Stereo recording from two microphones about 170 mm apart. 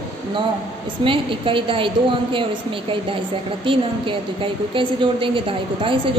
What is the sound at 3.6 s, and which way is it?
A woman's voice, 30° right (ahead or behind).